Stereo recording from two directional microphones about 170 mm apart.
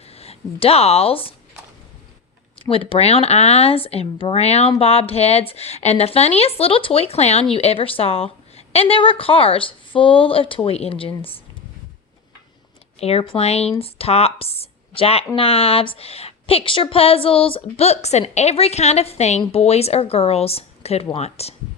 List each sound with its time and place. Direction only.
0.0 s speech: 35° left (ahead or behind)
2.6 s a woman's voice: 30° left (ahead or behind)
13.0 s a woman's voice: 35° left (ahead or behind)